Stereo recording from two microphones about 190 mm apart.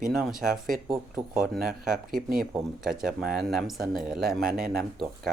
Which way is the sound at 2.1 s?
50° right (ahead or behind).